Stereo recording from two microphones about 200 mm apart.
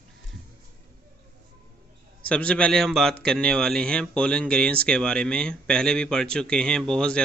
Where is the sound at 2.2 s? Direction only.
5° left (ahead or behind).